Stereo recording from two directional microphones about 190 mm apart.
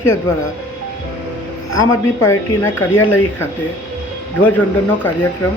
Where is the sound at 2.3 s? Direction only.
10° left (ahead or behind).